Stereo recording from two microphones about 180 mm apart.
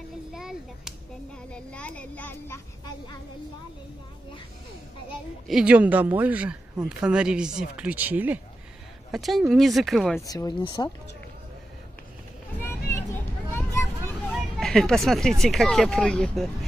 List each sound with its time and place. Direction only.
0.3 s a child's voice: 5° right (ahead or behind); by 3.2 s 20° left (ahead or behind)
5.5 s speech: 5° right (ahead or behind)
10.2 s speech: 20° left (ahead or behind)
12.5 s vehicle: 15° left (ahead or behind)
14.6 s speech: centre (ahead or behind)